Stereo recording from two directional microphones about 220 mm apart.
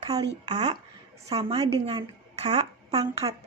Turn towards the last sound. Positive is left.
turn(degrees=-20)  # may be behind; listen again after turning